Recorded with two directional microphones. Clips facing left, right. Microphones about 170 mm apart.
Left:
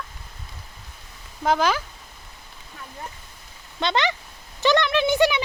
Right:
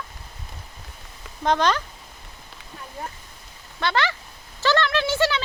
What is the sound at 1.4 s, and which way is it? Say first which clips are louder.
Speech: even; 5° left (ahead or behind).